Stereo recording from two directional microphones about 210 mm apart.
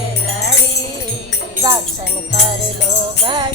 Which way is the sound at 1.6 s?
15° right (ahead or behind).